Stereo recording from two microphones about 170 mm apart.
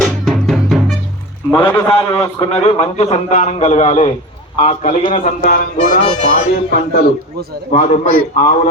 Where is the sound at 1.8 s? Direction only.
35° left (ahead or behind); by 5.7 s 50° left (ahead or behind).